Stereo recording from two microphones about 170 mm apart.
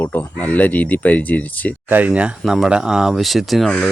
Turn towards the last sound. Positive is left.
turn(degrees=0)  # may be behind; listen again after turning